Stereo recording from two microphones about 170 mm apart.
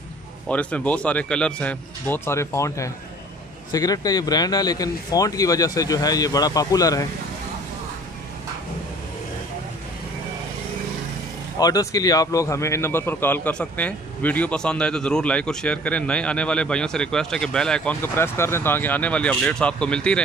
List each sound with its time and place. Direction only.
0.5 s a man's voice: 5° left (ahead or behind)
11.6 s a man's voice: 20° left (ahead or behind); by 20.2 s 5° left (ahead or behind)